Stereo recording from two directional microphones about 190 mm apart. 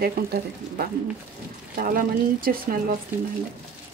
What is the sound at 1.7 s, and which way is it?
Speech, 50° right (ahead or behind).